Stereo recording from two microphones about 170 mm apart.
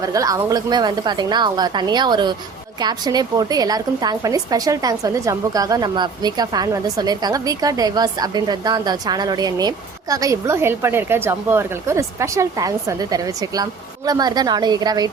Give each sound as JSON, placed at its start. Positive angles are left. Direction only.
{"t": 0.0, "sound": "a woman's voice", "side_deg": -20}